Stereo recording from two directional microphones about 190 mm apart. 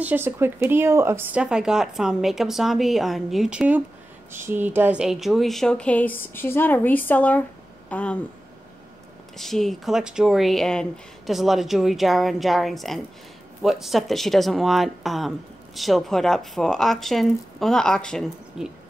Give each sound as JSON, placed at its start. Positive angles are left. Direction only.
{"t": 0.0, "sound": "speech", "side_deg": -10}
{"t": 9.4, "sound": "speech", "side_deg": 0}